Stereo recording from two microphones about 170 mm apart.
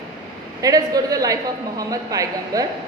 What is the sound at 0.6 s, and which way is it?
A woman's voice, 20° right (ahead or behind).